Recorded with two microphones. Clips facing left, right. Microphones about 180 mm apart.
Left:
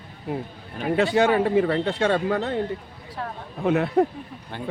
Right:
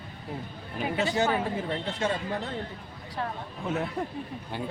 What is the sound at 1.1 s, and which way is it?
Speech, 70° left (ahead or behind).